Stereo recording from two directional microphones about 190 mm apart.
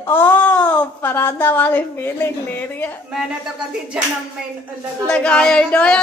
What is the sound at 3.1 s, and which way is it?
Speech, 5° right (ahead or behind).